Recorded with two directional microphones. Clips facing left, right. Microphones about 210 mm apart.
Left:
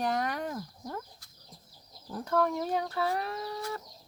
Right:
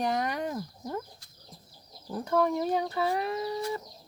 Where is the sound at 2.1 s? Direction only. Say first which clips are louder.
Right 2 dB; 10° right (ahead or behind).